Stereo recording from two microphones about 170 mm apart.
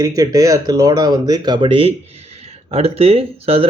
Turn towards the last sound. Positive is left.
turn(degrees=-35)  # may be behind; listen again after turning